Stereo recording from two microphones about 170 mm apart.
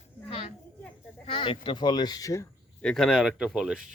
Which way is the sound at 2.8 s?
5° left (ahead or behind).